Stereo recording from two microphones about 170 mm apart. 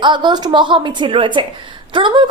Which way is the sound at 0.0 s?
25° right (ahead or behind).